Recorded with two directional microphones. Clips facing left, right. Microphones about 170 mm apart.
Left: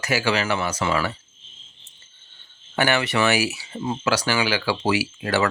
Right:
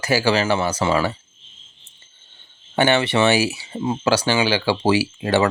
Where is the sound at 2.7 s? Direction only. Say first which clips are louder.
Right 4 dB; 25° right (ahead or behind).